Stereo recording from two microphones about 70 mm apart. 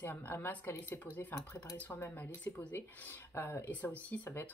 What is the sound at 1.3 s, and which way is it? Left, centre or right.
Speech, left.